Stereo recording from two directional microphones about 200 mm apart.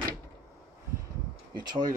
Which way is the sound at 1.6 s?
20° right (ahead or behind).